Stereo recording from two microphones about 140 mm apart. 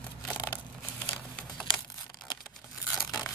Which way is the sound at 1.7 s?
35° left (ahead or behind).